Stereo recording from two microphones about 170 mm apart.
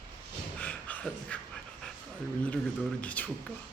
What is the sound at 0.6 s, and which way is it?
Beatboxing, 5° left (ahead or behind).